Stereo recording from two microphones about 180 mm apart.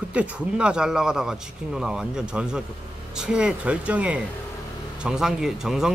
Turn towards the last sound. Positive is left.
turn(degrees=-5)  # may be behind; listen again after turning